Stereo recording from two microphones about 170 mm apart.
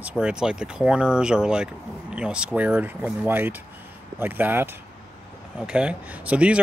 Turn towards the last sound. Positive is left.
turn(degrees=-5)  # may be behind; listen again after turning